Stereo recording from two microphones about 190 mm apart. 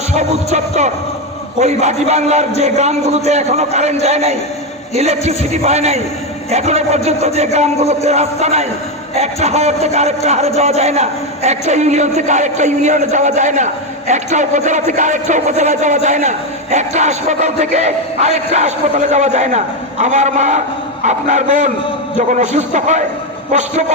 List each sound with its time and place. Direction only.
0.2 s music: 35° right (ahead or behind)
5.4 s music: 35° right (ahead or behind)